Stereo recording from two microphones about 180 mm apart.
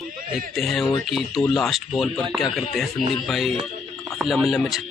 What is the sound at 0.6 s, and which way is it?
A man's voice, centre (ahead or behind).